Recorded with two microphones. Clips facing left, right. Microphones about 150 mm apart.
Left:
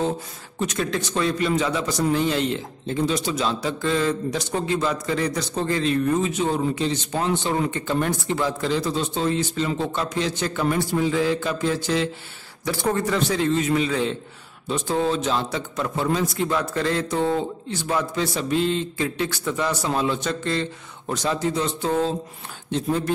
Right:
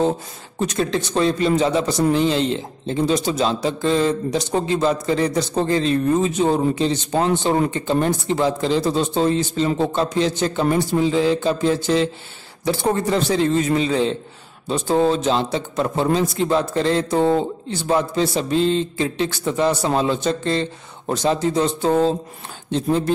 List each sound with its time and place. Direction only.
0.6 s a man's voice: 35° right (ahead or behind)